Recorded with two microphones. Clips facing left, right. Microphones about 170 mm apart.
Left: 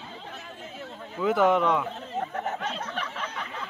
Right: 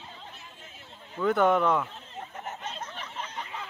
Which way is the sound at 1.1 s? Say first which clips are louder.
Left 1 dB; 5° left (ahead or behind).